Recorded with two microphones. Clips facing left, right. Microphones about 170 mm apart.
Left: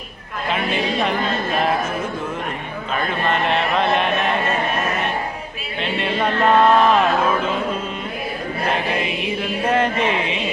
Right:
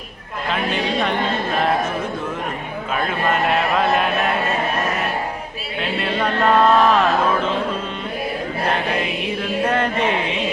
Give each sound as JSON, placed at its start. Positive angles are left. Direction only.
{"t": 0.5, "sound": "speech", "side_deg": 0}
{"t": 2.9, "sound": "speech", "side_deg": -5}
{"t": 5.8, "sound": "a sound", "side_deg": 0}
{"t": 9.0, "sound": "speech", "side_deg": 0}